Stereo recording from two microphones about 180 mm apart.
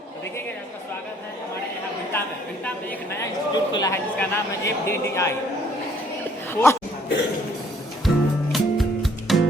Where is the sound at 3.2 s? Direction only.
20° left (ahead or behind).